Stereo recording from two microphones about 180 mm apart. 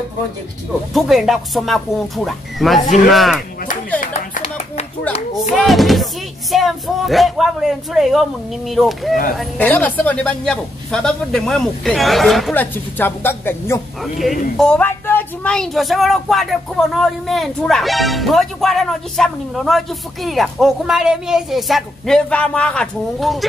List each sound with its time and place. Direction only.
0.9 s speech: centre (ahead or behind)
2.8 s speech: 45° left (ahead or behind)
3.1 s speech: centre (ahead or behind)
4.0 s clapping: 40° left (ahead or behind)
5.6 s speech: centre (ahead or behind)